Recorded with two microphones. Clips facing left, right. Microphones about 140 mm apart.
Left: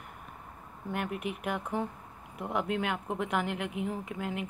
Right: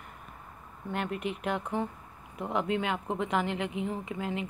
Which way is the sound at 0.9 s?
5° left (ahead or behind).